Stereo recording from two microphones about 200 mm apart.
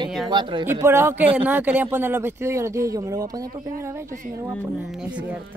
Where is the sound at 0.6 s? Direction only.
10° right (ahead or behind).